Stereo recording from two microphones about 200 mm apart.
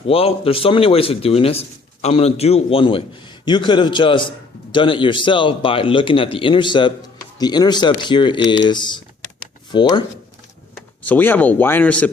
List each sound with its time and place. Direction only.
0.1 s speech: 30° left (ahead or behind)
11.0 s speech: 10° left (ahead or behind)